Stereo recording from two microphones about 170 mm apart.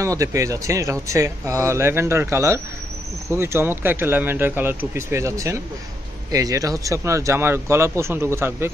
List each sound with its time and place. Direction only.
0.0 s speech: 20° right (ahead or behind)